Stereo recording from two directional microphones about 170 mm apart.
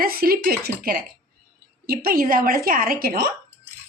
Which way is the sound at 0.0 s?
60° right (ahead or behind).